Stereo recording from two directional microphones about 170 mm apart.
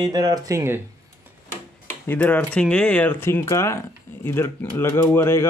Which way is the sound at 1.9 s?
10° left (ahead or behind).